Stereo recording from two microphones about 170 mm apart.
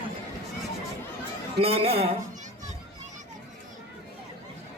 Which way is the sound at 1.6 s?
35° right (ahead or behind).